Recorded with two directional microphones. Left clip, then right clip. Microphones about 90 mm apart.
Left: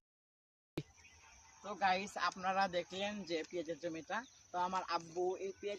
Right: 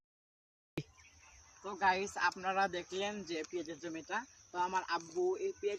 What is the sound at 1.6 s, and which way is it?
Speech, 25° left (ahead or behind).